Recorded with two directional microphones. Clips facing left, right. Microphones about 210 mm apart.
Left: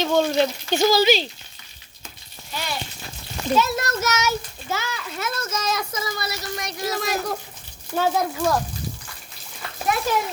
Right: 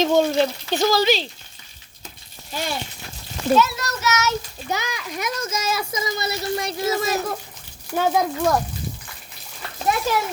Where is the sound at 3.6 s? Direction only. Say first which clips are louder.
Left 4 dB; 45° left (ahead or behind).